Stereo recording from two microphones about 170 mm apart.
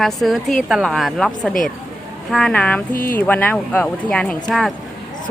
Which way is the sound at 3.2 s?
10° left (ahead or behind).